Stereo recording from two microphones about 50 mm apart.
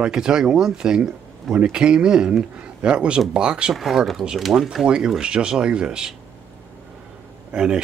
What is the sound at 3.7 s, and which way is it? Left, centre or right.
Speech, centre.